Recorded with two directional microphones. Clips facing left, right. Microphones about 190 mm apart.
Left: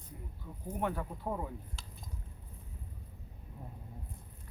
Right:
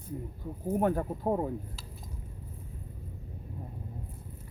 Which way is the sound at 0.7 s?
45° right (ahead or behind).